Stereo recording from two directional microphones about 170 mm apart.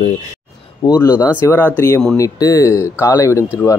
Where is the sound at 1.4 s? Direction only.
10° left (ahead or behind).